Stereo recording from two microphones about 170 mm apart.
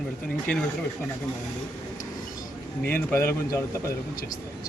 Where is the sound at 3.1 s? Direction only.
15° left (ahead or behind).